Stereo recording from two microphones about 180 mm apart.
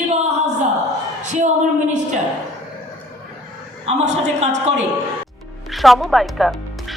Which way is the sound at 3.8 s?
40° right (ahead or behind).